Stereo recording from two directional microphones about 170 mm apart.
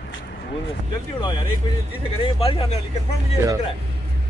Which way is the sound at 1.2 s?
25° left (ahead or behind).